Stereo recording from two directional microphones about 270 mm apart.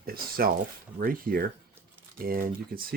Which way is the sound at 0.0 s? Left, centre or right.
Right.